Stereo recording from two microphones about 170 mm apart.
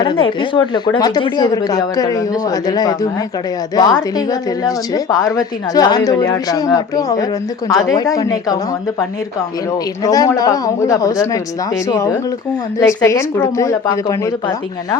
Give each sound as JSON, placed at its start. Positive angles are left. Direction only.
{"t": 0.0, "sound": "a woman's voice", "side_deg": 30}
{"t": 10.0, "sound": "a woman's voice", "side_deg": 20}